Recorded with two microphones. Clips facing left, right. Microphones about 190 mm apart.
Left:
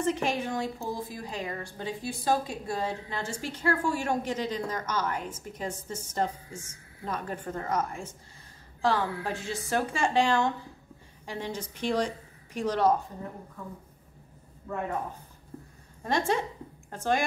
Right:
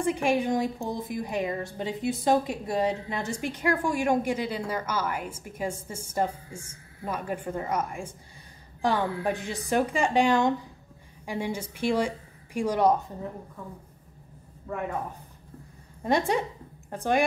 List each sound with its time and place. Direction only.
0.0 s a woman's voice: 10° right (ahead or behind)
16.0 s a woman's voice: 15° right (ahead or behind)